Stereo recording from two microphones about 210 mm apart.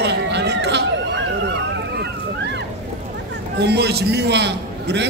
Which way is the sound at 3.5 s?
50° right (ahead or behind).